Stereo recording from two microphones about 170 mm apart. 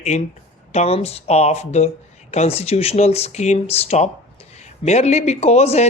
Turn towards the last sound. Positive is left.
turn(degrees=40)  # may be behind; listen again after turning